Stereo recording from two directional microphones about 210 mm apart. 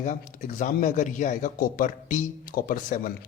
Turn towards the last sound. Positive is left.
turn(degrees=40)  # may be behind; listen again after turning